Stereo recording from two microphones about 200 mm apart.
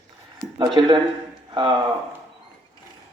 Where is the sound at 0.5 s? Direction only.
25° right (ahead or behind).